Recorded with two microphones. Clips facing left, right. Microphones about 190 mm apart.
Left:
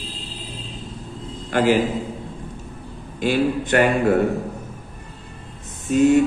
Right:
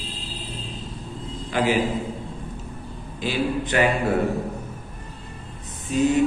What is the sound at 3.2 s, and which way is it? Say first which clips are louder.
Speech: left 5 dB; 50° left (ahead or behind).